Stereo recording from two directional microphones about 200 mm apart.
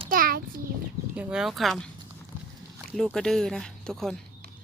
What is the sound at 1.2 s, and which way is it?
Speech, 5° right (ahead or behind).